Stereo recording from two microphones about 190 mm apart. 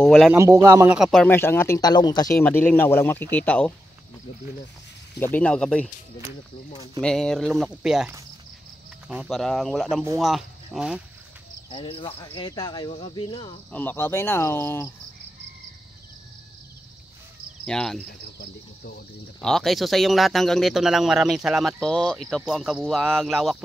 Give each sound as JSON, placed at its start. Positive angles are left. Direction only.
{"t": 0.0, "sound": "speech", "side_deg": 0}
{"t": 0.3, "sound": "a man's voice", "side_deg": -15}
{"t": 0.9, "sound": "speech", "side_deg": -5}
{"t": 1.2, "sound": "speech", "side_deg": 10}
{"t": 2.3, "sound": "speech", "side_deg": 10}
{"t": 5.2, "sound": "speech", "side_deg": 10}
{"t": 7.0, "sound": "speech", "side_deg": 5}
{"t": 11.7, "sound": "speech", "side_deg": 25}
{"t": 13.7, "sound": "speech", "side_deg": 10}
{"t": 17.6, "sound": "speech", "side_deg": 5}
{"t": 18.0, "sound": "cricket", "side_deg": 55}
{"t": 19.4, "sound": "speech", "side_deg": 0}